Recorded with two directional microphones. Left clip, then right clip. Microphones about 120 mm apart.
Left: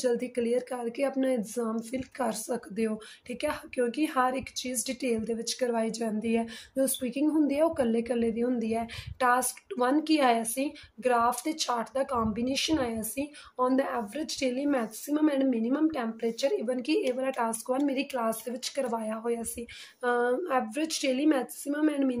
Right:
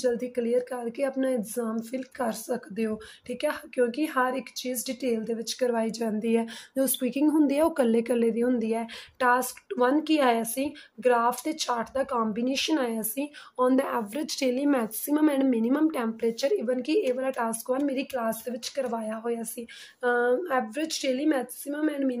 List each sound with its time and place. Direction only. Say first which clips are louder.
0.0 s speech: right 1 dB; 5° right (ahead or behind); by 16.6 s 40° right (ahead or behind)
16.6 s a woman's voice: right 3 dB; 30° right (ahead or behind); by 22.2 s centre (ahead or behind)